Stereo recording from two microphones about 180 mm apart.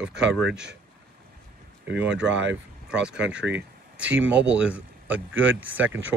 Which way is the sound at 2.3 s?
90° right.